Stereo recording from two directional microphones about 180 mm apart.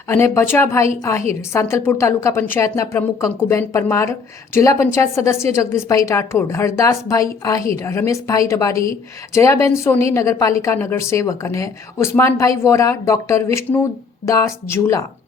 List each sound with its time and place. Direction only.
0.1 s a woman's voice: 15° left (ahead or behind)